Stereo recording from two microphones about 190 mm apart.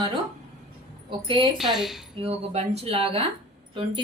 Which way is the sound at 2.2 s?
30° right (ahead or behind).